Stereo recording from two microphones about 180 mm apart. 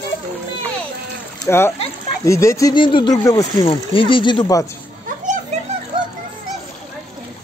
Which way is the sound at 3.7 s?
30° left (ahead or behind).